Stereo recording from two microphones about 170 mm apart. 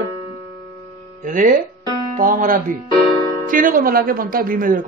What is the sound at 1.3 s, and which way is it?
Speech, 50° right (ahead or behind).